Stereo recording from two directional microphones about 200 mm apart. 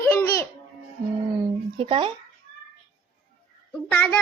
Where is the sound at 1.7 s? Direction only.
30° right (ahead or behind).